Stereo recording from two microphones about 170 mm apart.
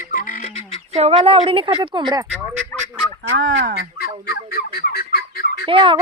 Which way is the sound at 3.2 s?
90° right.